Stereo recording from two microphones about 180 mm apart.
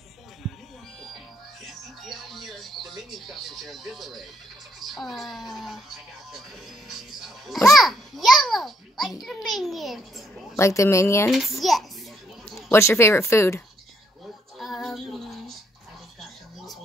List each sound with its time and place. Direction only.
0.4 s music: centre (ahead or behind)
1.7 s music: centre (ahead or behind)
4.7 s speech: centre (ahead or behind)
6.9 s music: centre (ahead or behind)
7.7 s a sound: centre (ahead or behind)
9.6 s a child's voice: centre (ahead or behind)
10.5 s speech: 15° left (ahead or behind)
11.3 s a child's voice: centre (ahead or behind)
12.7 s speech: 15° left (ahead or behind)
14.6 s female singing: centre (ahead or behind)